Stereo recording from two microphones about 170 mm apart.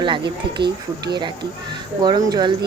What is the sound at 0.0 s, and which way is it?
Speech, 25° right (ahead or behind).